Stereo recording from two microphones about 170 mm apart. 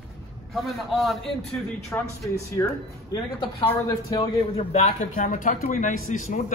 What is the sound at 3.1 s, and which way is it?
Speech, 25° left (ahead or behind).